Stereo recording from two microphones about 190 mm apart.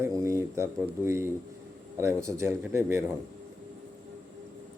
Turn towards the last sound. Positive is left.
turn(degrees=-15)  # may be behind; listen again after turning